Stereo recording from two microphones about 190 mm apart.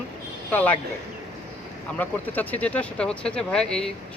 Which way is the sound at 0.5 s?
10° left (ahead or behind).